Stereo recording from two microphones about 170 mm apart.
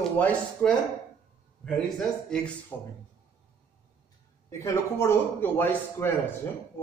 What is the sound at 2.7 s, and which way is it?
Speech, 10° left (ahead or behind).